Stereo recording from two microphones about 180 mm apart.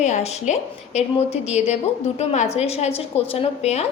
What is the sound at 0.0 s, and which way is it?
A woman's voice, 40° left (ahead or behind).